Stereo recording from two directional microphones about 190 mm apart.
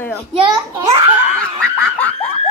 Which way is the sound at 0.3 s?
25° right (ahead or behind).